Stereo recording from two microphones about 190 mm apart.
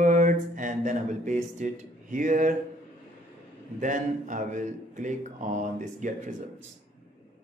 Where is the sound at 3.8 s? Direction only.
40° right (ahead or behind).